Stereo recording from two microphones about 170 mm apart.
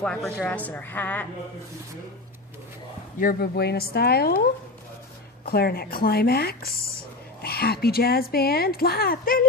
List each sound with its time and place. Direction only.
0.0 s speech: 5° left (ahead or behind)
3.2 s speech: 60° left (ahead or behind)
5.5 s speech: 65° left (ahead or behind)